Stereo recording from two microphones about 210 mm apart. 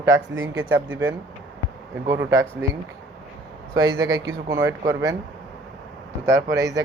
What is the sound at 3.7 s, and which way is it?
Speech, 15° right (ahead or behind).